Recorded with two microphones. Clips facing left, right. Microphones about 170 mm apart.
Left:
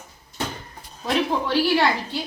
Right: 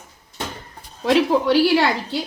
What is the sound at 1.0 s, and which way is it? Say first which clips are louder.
Speech: right 6 dB; 90° right.